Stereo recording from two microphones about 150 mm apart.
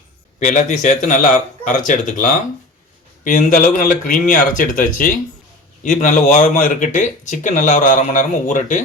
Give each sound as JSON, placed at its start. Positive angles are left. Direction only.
{"t": 0.3, "sound": "speech", "side_deg": 55}
{"t": 6.0, "sound": "speech", "side_deg": 55}